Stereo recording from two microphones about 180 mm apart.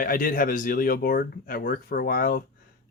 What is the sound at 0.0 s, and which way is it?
Speech, 50° left (ahead or behind).